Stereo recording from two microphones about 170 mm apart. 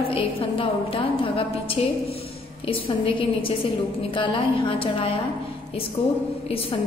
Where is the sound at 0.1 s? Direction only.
30° left (ahead or behind).